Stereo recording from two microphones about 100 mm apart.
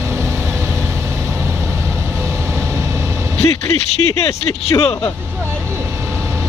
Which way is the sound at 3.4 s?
90° left.